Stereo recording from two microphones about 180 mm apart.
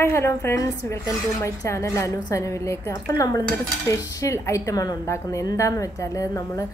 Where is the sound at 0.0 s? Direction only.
15° left (ahead or behind).